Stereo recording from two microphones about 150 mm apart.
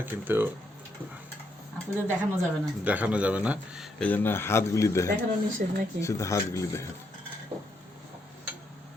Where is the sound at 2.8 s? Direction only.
10° right (ahead or behind).